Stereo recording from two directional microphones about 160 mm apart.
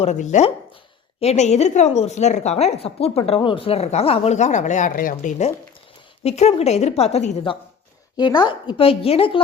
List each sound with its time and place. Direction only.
0.0 s a woman's voice: 45° left (ahead or behind)
6.2 s a woman's voice: 40° left (ahead or behind)
8.1 s a woman's voice: 25° left (ahead or behind)